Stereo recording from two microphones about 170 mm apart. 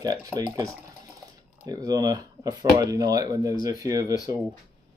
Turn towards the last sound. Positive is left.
turn(degrees=-20)  # may be behind; listen again after turning